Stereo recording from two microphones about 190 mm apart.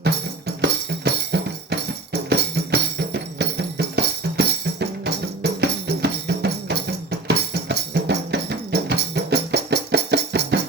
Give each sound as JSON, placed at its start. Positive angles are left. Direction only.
{"t": 0.0, "sound": "music", "side_deg": -60}